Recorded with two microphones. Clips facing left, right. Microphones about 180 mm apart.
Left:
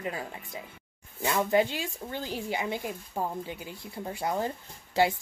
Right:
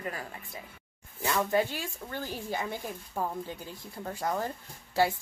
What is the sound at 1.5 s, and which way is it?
Speech, 15° left (ahead or behind).